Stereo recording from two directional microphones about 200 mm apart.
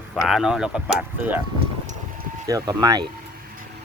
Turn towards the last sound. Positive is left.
turn(degrees=-20)  # may be behind; listen again after turning